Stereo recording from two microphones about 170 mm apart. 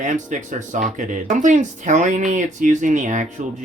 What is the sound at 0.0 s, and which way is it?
Speech, 45° right (ahead or behind).